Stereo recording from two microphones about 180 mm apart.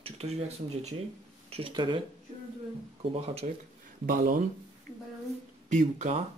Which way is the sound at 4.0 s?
50° right (ahead or behind).